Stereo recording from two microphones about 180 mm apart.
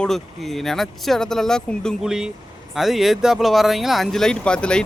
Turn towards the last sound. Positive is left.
turn(degrees=5)  # may be behind; listen again after turning